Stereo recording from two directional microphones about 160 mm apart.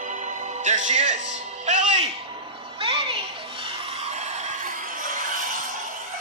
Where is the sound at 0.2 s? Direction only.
50° right (ahead or behind).